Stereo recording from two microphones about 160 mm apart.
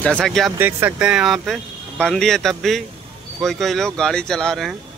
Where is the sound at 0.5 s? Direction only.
15° right (ahead or behind); by 4.7 s centre (ahead or behind).